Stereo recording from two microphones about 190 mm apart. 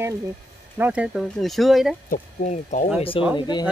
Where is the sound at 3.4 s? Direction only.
25° left (ahead or behind).